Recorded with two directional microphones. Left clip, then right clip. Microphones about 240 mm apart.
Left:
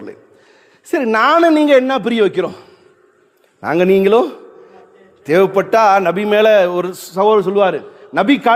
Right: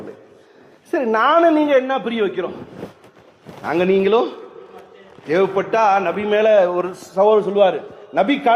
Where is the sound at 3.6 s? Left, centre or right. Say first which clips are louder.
Left 4 dB; left.